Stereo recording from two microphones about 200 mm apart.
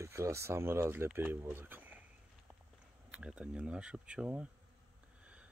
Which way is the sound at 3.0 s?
5° right (ahead or behind).